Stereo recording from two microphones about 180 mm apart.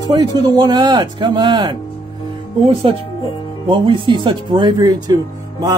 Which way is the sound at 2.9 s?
30° right (ahead or behind).